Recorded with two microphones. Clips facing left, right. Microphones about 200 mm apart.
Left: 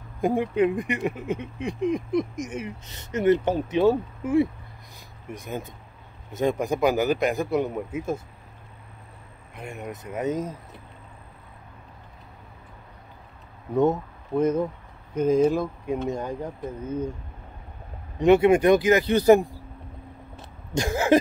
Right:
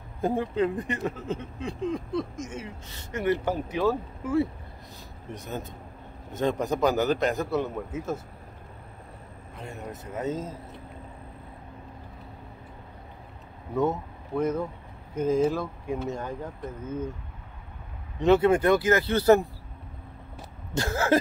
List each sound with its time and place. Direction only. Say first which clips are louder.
0.2 s speech: left 4 dB; 15° left (ahead or behind)
9.6 s speech: left 3 dB; 15° left (ahead or behind)
13.7 s speech: left 5 dB; 20° left (ahead or behind)
18.2 s speech: left 3 dB; 15° left (ahead or behind)
20.7 s speech: left 4 dB; 15° left (ahead or behind)